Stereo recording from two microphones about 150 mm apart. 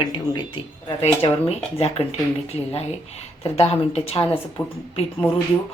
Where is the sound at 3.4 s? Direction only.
40° left (ahead or behind).